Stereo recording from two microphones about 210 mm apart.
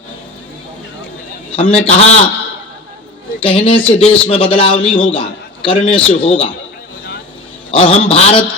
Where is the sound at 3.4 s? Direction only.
25° left (ahead or behind).